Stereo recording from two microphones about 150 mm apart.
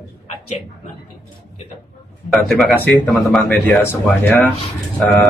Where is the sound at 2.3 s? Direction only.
Centre (ahead or behind).